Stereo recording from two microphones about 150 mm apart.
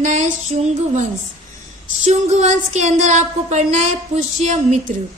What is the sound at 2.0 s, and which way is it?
Speech, 45° right (ahead or behind).